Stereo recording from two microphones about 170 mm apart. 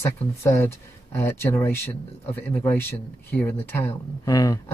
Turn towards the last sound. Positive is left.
turn(degrees=20)  # may be behind; listen again after turning